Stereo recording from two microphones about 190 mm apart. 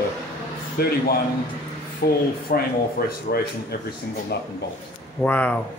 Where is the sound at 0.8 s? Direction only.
55° left (ahead or behind).